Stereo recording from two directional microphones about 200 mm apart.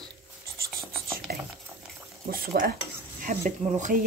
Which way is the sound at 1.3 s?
50° right (ahead or behind).